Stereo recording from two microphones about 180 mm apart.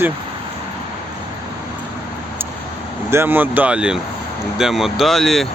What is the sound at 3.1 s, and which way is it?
Speech, 10° right (ahead or behind).